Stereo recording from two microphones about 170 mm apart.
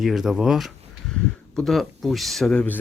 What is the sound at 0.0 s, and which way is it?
Speech, centre (ahead or behind).